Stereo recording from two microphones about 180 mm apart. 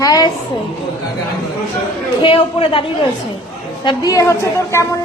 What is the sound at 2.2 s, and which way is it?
Speech, 30° left (ahead or behind).